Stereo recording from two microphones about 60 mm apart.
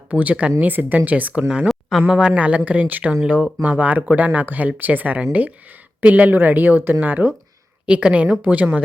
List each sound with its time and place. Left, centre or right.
0.1 s speech: right
1.6 s a sound: centre
2.0 s speech: centre